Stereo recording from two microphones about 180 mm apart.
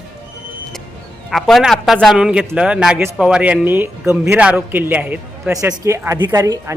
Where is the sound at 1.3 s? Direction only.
Centre (ahead or behind).